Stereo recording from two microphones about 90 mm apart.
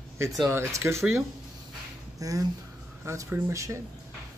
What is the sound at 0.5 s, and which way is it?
Speech, 30° right (ahead or behind).